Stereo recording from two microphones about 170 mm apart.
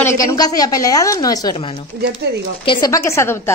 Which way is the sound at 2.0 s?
75° right (ahead or behind).